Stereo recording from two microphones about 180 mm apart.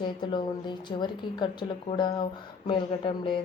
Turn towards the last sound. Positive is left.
turn(degrees=30)  # may be behind; listen again after turning